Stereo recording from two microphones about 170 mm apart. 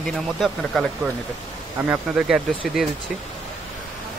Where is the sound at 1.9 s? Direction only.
5° right (ahead or behind).